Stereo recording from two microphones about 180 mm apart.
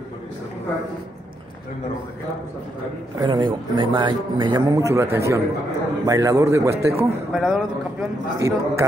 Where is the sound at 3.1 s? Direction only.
25° right (ahead or behind).